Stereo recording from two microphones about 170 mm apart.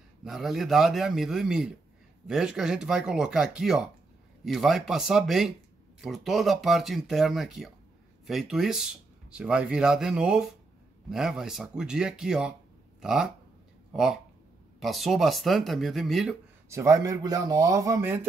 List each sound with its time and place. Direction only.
0.2 s speech: centre (ahead or behind)
16.6 s speech: 15° right (ahead or behind)